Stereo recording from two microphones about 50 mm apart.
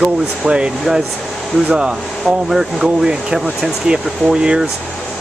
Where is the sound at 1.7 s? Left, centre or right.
Centre.